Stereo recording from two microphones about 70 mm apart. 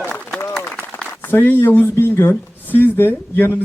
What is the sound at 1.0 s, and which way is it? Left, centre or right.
Speech, left.